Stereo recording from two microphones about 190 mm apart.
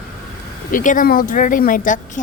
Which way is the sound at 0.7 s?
45° left (ahead or behind).